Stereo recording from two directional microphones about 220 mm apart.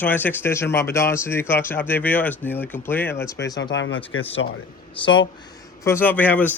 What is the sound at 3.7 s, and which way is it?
Speech, 60° left (ahead or behind).